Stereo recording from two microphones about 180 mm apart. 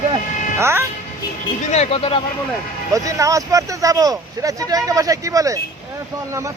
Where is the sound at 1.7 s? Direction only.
35° left (ahead or behind).